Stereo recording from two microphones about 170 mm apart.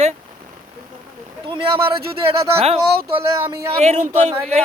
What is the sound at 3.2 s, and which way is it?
Speech, 15° right (ahead or behind).